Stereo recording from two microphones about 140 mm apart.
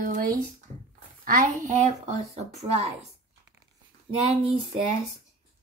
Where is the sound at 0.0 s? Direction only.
75° right (ahead or behind).